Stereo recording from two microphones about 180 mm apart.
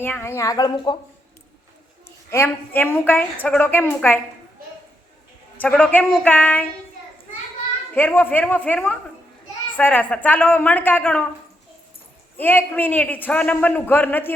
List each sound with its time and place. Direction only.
0.0 s a woman's voice: 10° left (ahead or behind)
2.0 s a woman's voice: 15° left (ahead or behind)
5.5 s a woman's voice: 5° left (ahead or behind)
7.9 s a woman's voice: 10° left (ahead or behind)
12.4 s a woman's voice: 10° left (ahead or behind)